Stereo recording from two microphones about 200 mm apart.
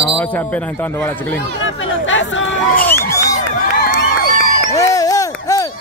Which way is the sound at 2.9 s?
15° left (ahead or behind).